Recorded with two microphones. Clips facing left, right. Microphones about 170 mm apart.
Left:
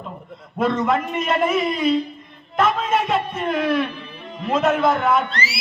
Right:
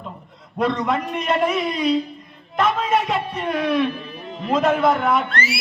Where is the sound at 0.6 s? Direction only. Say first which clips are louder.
Left 1 dB; centre (ahead or behind).